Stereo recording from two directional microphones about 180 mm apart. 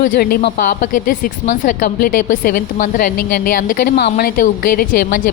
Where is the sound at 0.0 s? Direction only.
55° left (ahead or behind).